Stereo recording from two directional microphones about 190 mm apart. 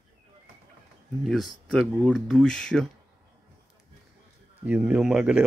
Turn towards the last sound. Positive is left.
turn(degrees=-5)  # may be behind; listen again after turning